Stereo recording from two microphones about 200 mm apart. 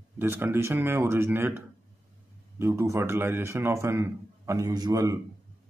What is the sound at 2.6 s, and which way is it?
A man's voice, 15° right (ahead or behind).